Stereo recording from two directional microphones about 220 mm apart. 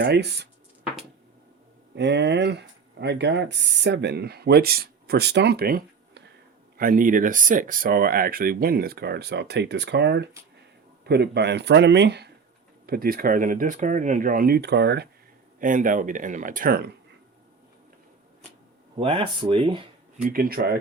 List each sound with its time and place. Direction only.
0.0 s speech: 50° right (ahead or behind)
2.0 s speech: 50° right (ahead or behind)
15.5 s speech: 40° right (ahead or behind)
18.9 s speech: 25° right (ahead or behind)
20.2 s speech: 40° right (ahead or behind)